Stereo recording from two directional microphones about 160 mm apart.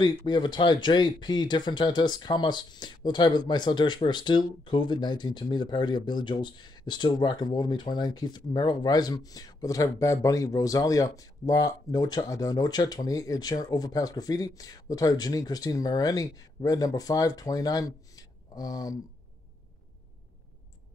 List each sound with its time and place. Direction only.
0.0 s speech: 25° left (ahead or behind)